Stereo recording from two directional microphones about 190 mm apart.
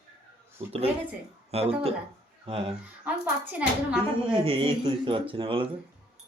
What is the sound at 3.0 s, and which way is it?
Speech, 10° right (ahead or behind).